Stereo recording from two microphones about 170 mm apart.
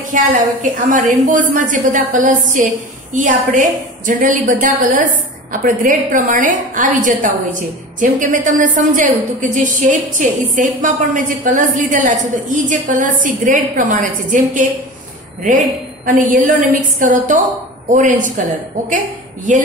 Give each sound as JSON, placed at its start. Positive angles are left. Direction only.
{"t": 0.1, "sound": "a woman's voice", "side_deg": -50}
{"t": 16.1, "sound": "a woman's voice", "side_deg": -50}